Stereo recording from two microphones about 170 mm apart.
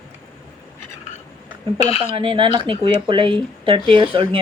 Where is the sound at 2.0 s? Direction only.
30° right (ahead or behind).